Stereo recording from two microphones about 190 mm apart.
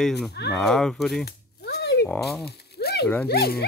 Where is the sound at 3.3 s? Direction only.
55° left (ahead or behind).